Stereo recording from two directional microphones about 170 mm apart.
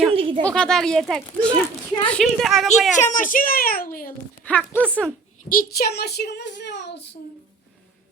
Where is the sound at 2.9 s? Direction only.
50° left (ahead or behind).